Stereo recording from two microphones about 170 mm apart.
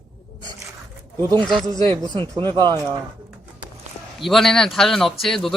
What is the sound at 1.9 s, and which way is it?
Speech, 30° right (ahead or behind).